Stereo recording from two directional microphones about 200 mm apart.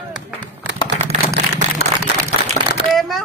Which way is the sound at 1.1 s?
35° right (ahead or behind).